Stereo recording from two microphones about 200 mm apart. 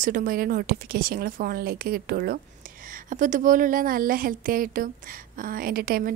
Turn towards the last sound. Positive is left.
turn(degrees=-50)  # may be behind; listen again after turning